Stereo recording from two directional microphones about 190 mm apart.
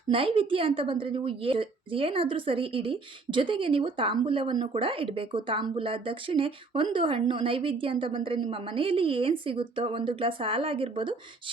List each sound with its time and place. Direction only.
0.1 s a woman's voice: 30° right (ahead or behind)